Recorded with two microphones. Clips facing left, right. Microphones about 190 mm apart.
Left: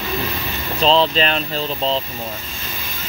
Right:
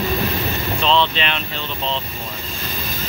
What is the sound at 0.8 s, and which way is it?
Speech, 35° left (ahead or behind).